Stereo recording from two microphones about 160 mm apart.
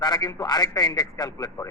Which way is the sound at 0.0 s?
25° left (ahead or behind).